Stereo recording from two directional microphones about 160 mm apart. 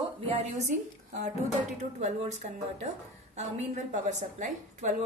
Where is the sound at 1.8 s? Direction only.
45° right (ahead or behind).